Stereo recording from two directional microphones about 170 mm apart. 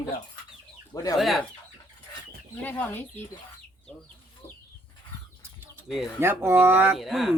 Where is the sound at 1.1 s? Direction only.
Centre (ahead or behind).